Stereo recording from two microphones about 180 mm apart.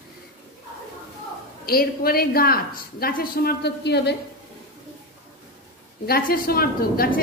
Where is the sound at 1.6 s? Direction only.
55° left (ahead or behind).